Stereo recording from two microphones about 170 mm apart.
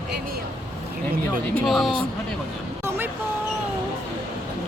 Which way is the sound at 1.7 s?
Centre (ahead or behind).